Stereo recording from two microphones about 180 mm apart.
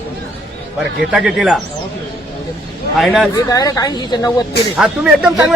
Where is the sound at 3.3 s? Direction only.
20° left (ahead or behind).